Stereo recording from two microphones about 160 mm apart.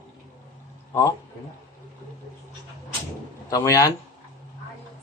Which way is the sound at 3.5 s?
20° left (ahead or behind).